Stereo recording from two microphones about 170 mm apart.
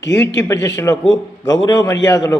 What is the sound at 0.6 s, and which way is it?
A man's voice, 20° left (ahead or behind).